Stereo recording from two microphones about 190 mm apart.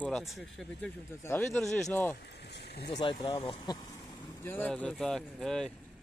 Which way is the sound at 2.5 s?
60° left (ahead or behind).